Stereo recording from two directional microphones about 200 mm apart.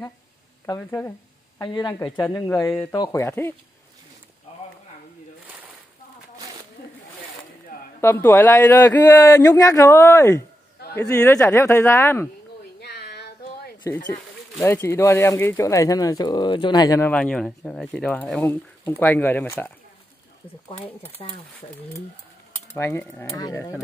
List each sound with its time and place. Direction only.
0.7 s speech: 10° left (ahead or behind)
8.0 s speech: 15° left (ahead or behind)
12.8 s a sound: 55° left (ahead or behind)
14.6 s speech: 10° left (ahead or behind)
17.1 s speech: 5° left (ahead or behind)
21.2 s speech: 25° left (ahead or behind)
22.8 s speech: 10° left (ahead or behind)